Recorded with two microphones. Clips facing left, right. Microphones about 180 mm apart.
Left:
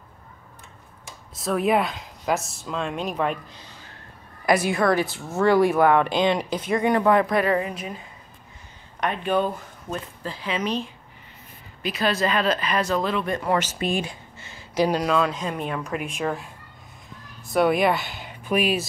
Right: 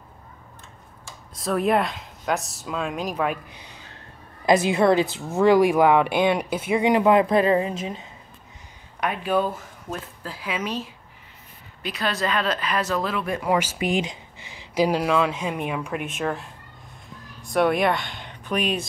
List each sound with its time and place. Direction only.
1.4 s speech: centre (ahead or behind)
3.5 s a sound: 15° right (ahead or behind)
4.5 s speech: 20° right (ahead or behind)
9.0 s speech: 5° right (ahead or behind)